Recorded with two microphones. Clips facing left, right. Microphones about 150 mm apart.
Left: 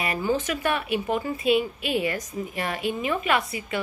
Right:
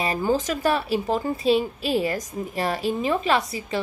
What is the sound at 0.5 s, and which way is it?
A woman's voice, 35° right (ahead or behind).